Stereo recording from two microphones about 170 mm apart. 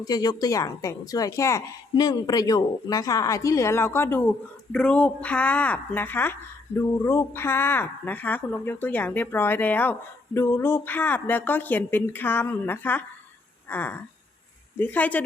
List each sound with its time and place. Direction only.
0.0 s speech: 20° left (ahead or behind)